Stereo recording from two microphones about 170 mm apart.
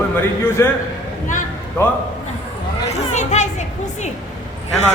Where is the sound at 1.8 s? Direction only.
15° left (ahead or behind).